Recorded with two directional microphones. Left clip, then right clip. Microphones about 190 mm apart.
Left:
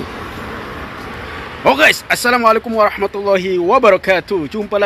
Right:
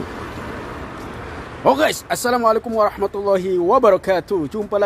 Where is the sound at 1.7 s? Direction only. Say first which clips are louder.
Left 5 dB; centre (ahead or behind).